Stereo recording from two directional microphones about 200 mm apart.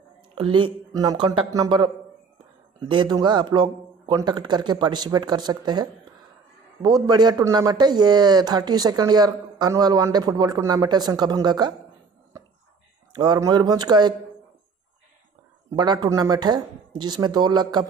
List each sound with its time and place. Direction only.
0.3 s speech: 25° right (ahead or behind)
13.1 s speech: 20° right (ahead or behind)
15.7 s speech: 20° right (ahead or behind)